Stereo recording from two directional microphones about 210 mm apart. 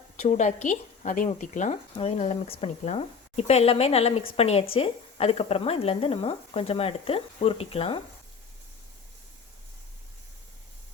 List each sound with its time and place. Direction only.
0.2 s a woman's voice: 35° left (ahead or behind)